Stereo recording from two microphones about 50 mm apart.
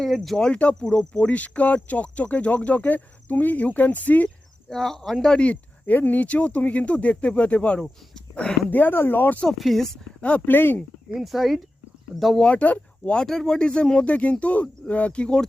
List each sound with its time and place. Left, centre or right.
0.0 s speech: centre; by 4.3 s left
4.7 s speech: centre
5.2 s speech: left
5.8 s speech: left
8.7 s speech: left
9.5 s speech: centre
10.2 s speech: left
10.4 s speech: left
11.1 s speech: centre
12.4 s speech: left
13.1 s speech: centre